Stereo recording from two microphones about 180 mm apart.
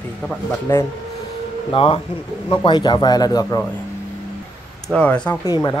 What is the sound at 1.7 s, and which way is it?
Speech, 30° left (ahead or behind).